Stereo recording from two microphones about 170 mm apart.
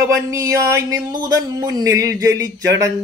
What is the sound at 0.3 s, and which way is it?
Speech, 15° right (ahead or behind).